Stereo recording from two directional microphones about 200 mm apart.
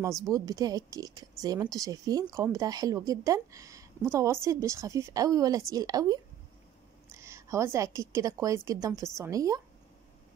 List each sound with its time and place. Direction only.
0.3 s a woman's voice: 20° right (ahead or behind)